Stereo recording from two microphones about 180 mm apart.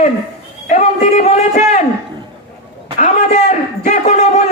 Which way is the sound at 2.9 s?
40° left (ahead or behind).